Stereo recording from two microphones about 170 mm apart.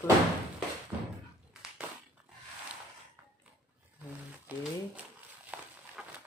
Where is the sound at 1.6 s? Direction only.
5° right (ahead or behind).